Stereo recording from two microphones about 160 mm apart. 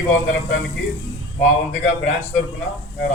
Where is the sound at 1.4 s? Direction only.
50° left (ahead or behind).